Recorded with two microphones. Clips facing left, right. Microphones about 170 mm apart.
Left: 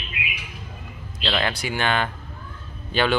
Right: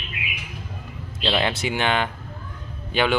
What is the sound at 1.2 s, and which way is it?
Speech, 20° right (ahead or behind).